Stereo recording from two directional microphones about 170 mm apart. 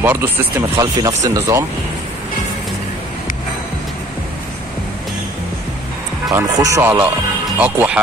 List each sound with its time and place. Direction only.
0.0 s speech: 10° right (ahead or behind)
6.3 s speech: 15° right (ahead or behind)